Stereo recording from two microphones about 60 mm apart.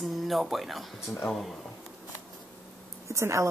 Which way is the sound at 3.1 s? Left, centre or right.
Right.